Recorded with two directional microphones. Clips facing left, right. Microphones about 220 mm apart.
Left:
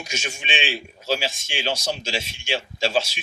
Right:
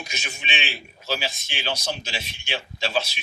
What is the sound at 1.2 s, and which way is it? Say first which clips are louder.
Speech: left 3 dB; 30° left (ahead or behind).